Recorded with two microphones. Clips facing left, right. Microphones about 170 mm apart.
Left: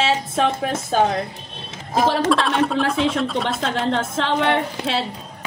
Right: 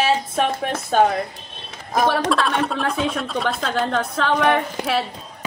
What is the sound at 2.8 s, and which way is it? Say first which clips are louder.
A woman's voice: left 3 dB; 25° left (ahead or behind).